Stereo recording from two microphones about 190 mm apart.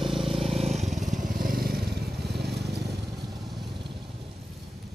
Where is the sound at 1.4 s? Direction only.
50° right (ahead or behind).